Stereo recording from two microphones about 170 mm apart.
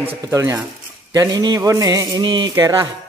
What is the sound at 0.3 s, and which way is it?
A man's voice, 15° right (ahead or behind).